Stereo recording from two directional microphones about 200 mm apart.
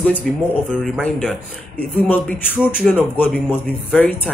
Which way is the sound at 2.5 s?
Centre (ahead or behind).